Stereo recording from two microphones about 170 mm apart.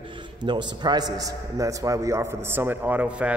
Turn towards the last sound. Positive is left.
turn(degrees=-10)  # may be behind; listen again after turning